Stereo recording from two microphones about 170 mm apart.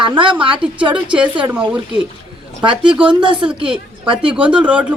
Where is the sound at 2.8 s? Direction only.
30° right (ahead or behind).